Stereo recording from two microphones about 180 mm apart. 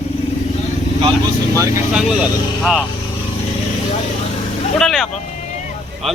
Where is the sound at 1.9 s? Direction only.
5° right (ahead or behind).